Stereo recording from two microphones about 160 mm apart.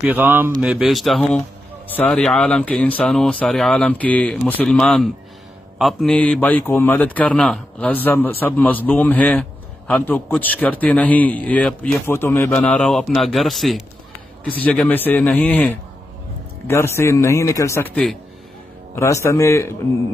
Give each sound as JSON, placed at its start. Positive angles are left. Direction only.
{"t": 0.0, "sound": "a man's voice", "side_deg": -10}